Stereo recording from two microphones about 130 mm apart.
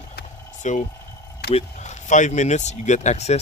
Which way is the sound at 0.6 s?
70° left (ahead or behind).